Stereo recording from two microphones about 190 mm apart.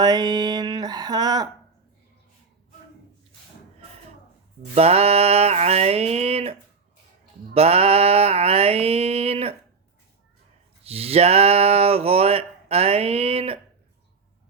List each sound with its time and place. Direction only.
0.0 s a sound: 20° right (ahead or behind)
4.7 s speech: 30° right (ahead or behind)
10.8 s speech: 30° right (ahead or behind)